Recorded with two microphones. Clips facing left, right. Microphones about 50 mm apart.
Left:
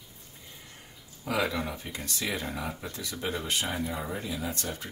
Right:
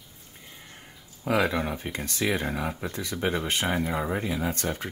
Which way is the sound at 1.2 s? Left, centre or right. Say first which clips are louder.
Right 5 dB; right.